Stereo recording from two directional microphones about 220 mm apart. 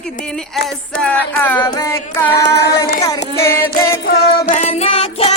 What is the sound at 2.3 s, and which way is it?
Singing, 45° left (ahead or behind).